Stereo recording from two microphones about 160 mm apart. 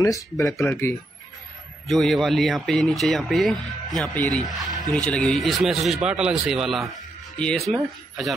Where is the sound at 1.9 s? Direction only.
Centre (ahead or behind).